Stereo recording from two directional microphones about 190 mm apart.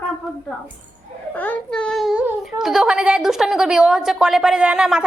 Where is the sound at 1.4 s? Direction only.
5° left (ahead or behind).